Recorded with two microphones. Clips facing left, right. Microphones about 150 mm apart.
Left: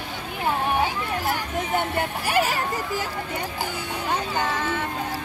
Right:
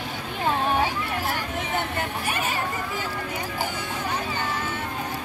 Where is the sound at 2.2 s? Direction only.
75° left (ahead or behind).